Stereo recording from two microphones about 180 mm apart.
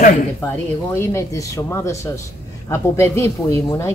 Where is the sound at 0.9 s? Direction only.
15° left (ahead or behind).